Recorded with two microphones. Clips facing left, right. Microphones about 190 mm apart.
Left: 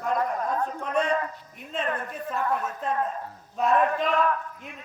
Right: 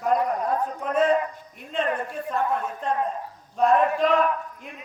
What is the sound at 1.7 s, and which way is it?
Speech, centre (ahead or behind).